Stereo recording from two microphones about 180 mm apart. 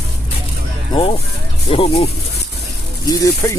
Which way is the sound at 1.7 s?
30° left (ahead or behind).